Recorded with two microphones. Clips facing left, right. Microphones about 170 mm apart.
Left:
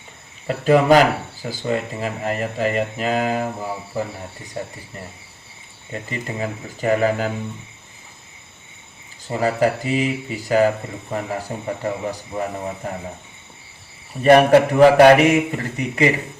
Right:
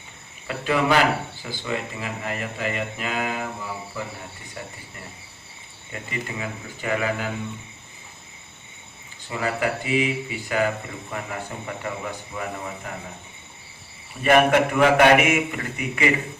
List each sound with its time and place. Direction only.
0.4 s speech: 40° left (ahead or behind)
5.9 s speech: 35° left (ahead or behind)
9.3 s speech: 35° left (ahead or behind)
14.2 s speech: 35° left (ahead or behind)